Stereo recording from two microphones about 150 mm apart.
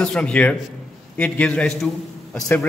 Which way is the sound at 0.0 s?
5° left (ahead or behind).